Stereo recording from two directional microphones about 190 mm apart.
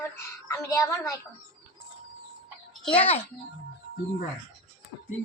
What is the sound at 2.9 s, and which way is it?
Speech, 30° left (ahead or behind).